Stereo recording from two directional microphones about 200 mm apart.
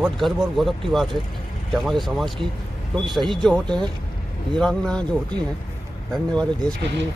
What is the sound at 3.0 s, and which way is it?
Speech, centre (ahead or behind).